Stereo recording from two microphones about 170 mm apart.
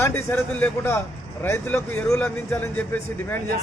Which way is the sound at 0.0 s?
15° left (ahead or behind).